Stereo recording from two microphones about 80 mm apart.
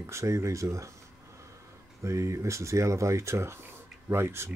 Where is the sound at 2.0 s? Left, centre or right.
Right.